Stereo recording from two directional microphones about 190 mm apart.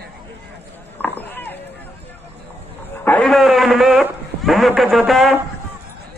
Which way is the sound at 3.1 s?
5° left (ahead or behind).